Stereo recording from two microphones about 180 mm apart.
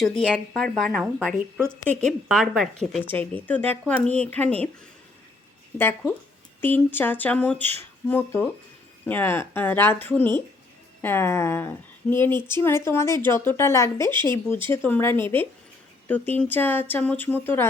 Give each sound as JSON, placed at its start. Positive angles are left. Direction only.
{"t": 0.0, "sound": "speech", "side_deg": 5}
{"t": 5.7, "sound": "speech", "side_deg": 10}
{"t": 7.6, "sound": "a sound", "side_deg": -35}
{"t": 8.0, "sound": "speech", "side_deg": 10}
{"t": 14.1, "sound": "speech", "side_deg": -25}
{"t": 14.7, "sound": "speech", "side_deg": 10}